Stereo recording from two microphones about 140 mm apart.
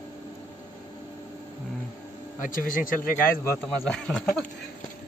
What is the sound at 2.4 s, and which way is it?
Speech, 80° left.